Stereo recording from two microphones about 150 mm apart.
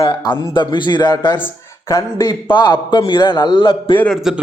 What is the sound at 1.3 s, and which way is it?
A man's voice, 20° left (ahead or behind).